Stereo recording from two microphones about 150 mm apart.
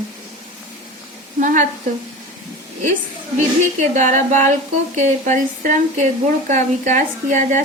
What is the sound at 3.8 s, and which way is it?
Speech, 55° right (ahead or behind).